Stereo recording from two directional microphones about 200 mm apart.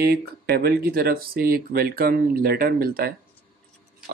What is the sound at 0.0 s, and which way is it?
Speech, 50° right (ahead or behind).